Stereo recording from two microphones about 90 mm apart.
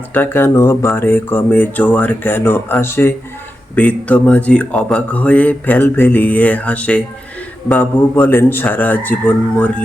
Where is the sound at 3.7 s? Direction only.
15° left (ahead or behind).